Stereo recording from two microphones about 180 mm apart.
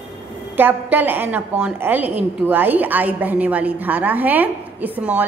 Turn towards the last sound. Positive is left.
turn(degrees=-10)  # may be behind; listen again after turning